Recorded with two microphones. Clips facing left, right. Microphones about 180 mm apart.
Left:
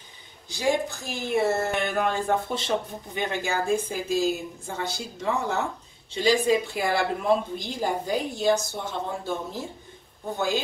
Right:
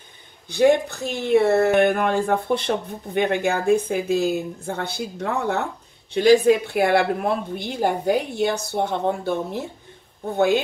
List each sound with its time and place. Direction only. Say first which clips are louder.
0.5 s a woman's voice: right 8 dB; 60° right (ahead or behind)